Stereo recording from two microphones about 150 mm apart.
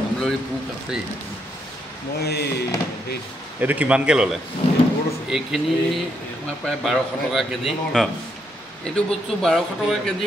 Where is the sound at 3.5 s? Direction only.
10° right (ahead or behind).